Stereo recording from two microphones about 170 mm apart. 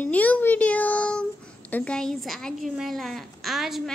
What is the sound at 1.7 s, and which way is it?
A woman's voice, 5° left (ahead or behind).